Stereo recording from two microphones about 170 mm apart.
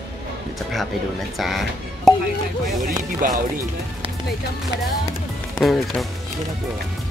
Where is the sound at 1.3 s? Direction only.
Centre (ahead or behind).